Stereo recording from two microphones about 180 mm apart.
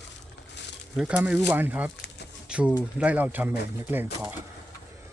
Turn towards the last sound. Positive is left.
turn(degrees=-10)  # may be behind; listen again after turning